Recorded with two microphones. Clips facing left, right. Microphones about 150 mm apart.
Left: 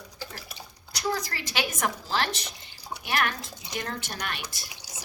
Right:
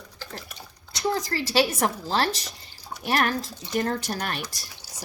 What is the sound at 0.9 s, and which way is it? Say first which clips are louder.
Speech: right 4 dB; 30° right (ahead or behind).